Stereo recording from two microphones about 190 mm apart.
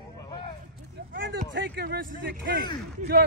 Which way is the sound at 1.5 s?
60° right (ahead or behind).